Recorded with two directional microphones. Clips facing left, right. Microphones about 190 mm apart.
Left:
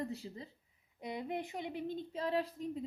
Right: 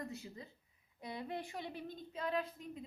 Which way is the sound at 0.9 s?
20° left (ahead or behind).